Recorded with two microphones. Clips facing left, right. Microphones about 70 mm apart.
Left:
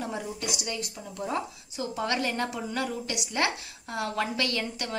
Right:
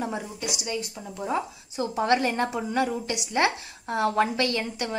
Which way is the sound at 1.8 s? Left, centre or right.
Right.